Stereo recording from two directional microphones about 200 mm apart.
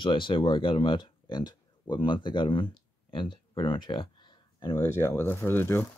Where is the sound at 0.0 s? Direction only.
25° left (ahead or behind).